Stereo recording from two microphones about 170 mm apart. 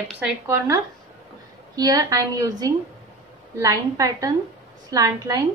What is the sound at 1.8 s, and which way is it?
A woman's voice, 20° right (ahead or behind).